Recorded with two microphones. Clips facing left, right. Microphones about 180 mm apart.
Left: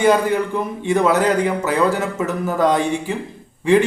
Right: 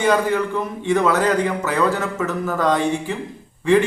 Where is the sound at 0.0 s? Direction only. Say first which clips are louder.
Left 2 dB; 15° left (ahead or behind).